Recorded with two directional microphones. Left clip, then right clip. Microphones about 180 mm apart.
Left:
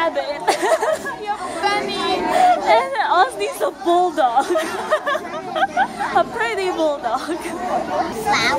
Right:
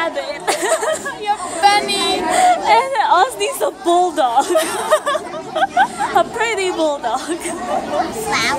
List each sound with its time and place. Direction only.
0.0 s a sound: 10° left (ahead or behind)
1.2 s chatter: 45° right (ahead or behind)
1.9 s a sound: 60° right (ahead or behind)
2.3 s chatter: 20° right (ahead or behind)
4.6 s chatter: 35° right (ahead or behind)
8.3 s a child's voice: 5° right (ahead or behind)